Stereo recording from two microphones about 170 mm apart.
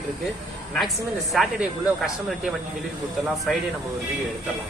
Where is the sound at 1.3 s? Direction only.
Centre (ahead or behind).